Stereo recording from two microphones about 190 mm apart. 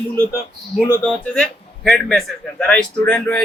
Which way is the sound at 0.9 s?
5° left (ahead or behind).